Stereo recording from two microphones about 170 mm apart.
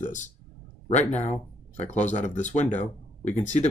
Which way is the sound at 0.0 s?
50° left (ahead or behind).